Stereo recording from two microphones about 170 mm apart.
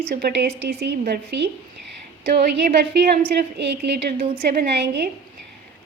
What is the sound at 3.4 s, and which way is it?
A woman's voice, 85° right.